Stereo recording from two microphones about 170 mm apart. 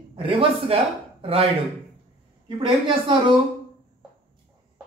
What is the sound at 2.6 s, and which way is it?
Speech, 30° right (ahead or behind).